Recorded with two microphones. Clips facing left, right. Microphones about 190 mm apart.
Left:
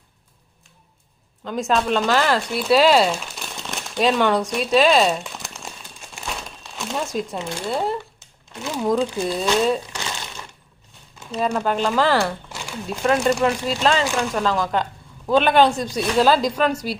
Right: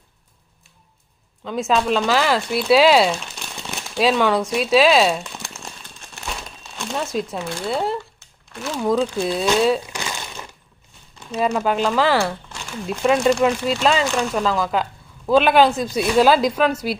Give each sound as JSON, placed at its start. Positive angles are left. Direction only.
{"t": 1.5, "sound": "speech", "side_deg": 0}
{"t": 6.1, "sound": "crumpling", "side_deg": 0}
{"t": 7.7, "sound": "speech", "side_deg": 0}
{"t": 8.5, "sound": "speech", "side_deg": 15}
{"t": 9.2, "sound": "a woman's voice", "side_deg": -5}
{"t": 11.3, "sound": "a woman's voice", "side_deg": -10}